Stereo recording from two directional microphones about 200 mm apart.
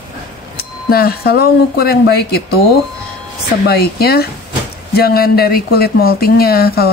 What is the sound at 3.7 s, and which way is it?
Speech, 50° left (ahead or behind).